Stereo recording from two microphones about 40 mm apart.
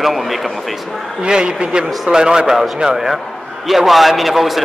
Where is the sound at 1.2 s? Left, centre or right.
Right.